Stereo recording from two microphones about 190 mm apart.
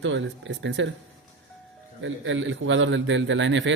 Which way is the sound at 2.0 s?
80° right.